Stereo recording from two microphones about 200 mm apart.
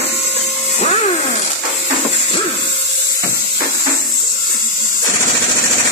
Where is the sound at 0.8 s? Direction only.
30° left (ahead or behind).